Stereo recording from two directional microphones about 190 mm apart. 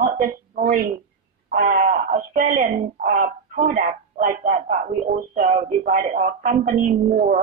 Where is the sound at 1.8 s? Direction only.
40° right (ahead or behind).